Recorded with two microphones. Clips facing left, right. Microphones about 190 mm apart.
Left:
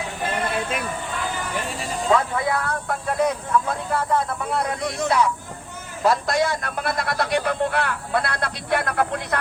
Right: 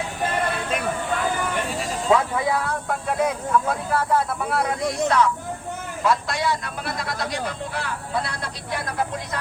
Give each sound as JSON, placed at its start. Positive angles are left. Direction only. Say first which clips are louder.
{"t": 1.8, "sound": "speech", "louder": "even", "side_deg": -5}
{"t": 5.0, "sound": "speech", "louder": "even", "side_deg": 10}
{"t": 6.0, "sound": "a man's voice", "louder": "left 3 dB", "side_deg": 40}